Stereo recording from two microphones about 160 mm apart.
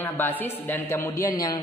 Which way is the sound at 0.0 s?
10° left (ahead or behind).